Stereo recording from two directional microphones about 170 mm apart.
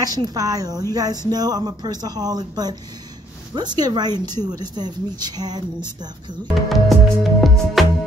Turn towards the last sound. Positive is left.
turn(degrees=0)  # may be behind; listen again after turning